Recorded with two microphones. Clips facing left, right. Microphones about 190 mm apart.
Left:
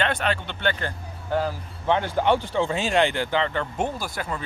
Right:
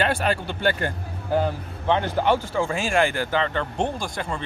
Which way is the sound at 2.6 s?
20° left (ahead or behind).